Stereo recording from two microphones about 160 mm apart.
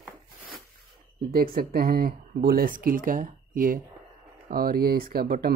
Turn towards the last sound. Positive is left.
turn(degrees=-70)  # may be behind; listen again after turning